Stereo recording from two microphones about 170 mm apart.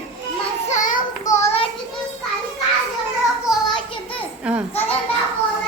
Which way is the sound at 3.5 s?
Centre (ahead or behind).